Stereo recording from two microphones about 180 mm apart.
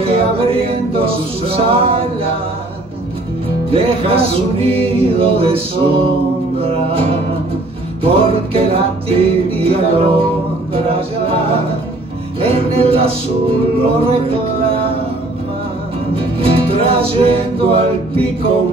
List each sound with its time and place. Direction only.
0.0 s music: 30° right (ahead or behind)
3.7 s music: 30° right (ahead or behind)
16.2 s music: 30° right (ahead or behind)